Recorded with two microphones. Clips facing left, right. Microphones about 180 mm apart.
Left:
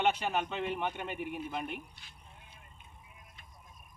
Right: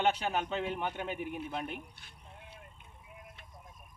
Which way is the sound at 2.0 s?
55° right (ahead or behind).